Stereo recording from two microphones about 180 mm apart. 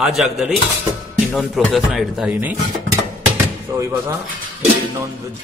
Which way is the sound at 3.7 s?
20° right (ahead or behind).